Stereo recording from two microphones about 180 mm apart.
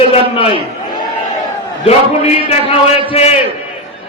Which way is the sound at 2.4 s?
35° left (ahead or behind).